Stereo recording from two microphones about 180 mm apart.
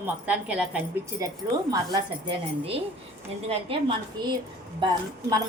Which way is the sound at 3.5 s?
30° right (ahead or behind).